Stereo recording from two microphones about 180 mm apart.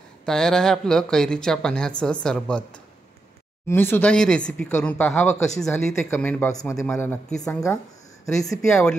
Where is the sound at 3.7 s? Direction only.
10° left (ahead or behind).